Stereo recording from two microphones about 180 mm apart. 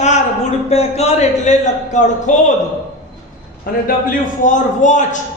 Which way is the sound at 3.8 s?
50° left (ahead or behind).